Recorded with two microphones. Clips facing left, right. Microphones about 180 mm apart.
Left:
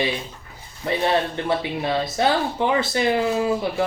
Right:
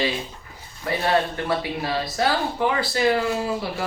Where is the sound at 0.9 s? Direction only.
25° left (ahead or behind).